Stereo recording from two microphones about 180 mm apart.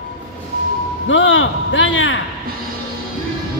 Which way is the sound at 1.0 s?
90° left.